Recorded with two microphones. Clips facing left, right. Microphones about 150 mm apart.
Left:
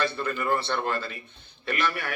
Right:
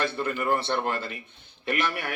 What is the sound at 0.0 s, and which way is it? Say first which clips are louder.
A man's voice: even; 20° right (ahead or behind).